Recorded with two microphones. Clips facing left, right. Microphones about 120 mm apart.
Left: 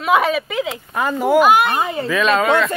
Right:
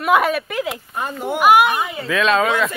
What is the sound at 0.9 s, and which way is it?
Speech, 90° left.